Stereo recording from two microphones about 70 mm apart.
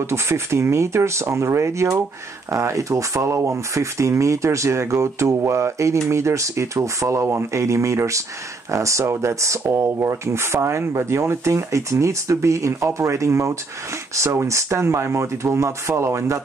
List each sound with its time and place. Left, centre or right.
0.0 s speech: right